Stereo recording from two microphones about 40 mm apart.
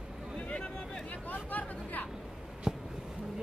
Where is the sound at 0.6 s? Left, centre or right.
Centre.